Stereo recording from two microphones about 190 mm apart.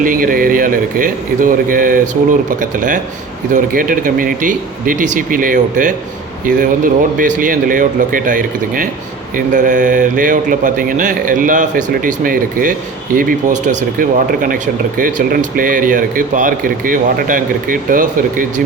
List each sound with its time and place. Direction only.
0.0 s speech: 45° right (ahead or behind)